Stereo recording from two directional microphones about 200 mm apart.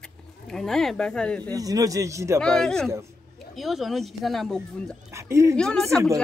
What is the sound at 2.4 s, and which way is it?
Speech, 5° left (ahead or behind).